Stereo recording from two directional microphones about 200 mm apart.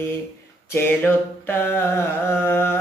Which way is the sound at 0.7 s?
10° left (ahead or behind).